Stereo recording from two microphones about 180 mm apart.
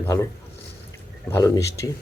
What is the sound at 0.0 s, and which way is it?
Speech, 15° left (ahead or behind).